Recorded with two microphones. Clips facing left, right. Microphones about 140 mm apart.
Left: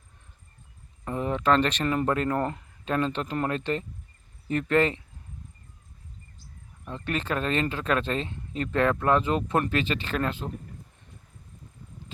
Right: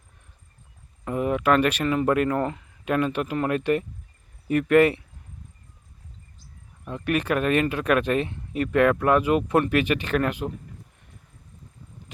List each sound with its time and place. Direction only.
1.0 s speech: 10° right (ahead or behind)
2.8 s speech: 10° right (ahead or behind)
6.8 s speech: 15° right (ahead or behind)